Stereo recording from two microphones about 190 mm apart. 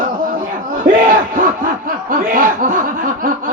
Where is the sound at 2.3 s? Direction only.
45° right (ahead or behind).